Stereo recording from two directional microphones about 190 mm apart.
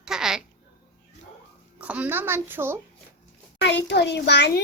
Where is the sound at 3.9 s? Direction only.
65° left (ahead or behind).